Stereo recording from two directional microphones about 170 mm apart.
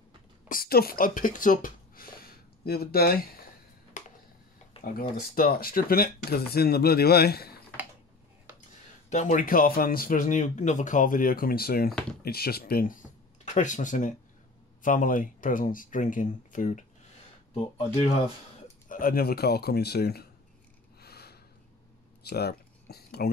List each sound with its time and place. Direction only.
0.5 s speech: 60° left (ahead or behind)
3.9 s a sound: 50° left (ahead or behind)
4.7 s a sound: 35° left (ahead or behind)
5.3 s speech: 60° left (ahead or behind)
9.1 s speech: 45° left (ahead or behind)
13.5 s speech: 45° left (ahead or behind)
17.7 s speech: 35° left (ahead or behind)
18.9 s speech: 55° left (ahead or behind)
21.0 s gasp: 70° left (ahead or behind)
22.2 s a sound: 70° left (ahead or behind)